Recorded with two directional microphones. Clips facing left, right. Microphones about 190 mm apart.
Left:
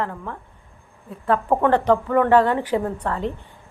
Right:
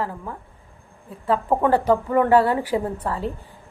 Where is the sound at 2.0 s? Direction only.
25° right (ahead or behind).